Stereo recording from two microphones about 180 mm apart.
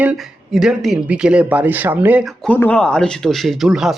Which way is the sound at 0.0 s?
5° right (ahead or behind).